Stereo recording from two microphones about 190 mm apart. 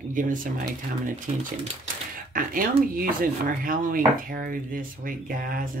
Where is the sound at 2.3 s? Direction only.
45° right (ahead or behind).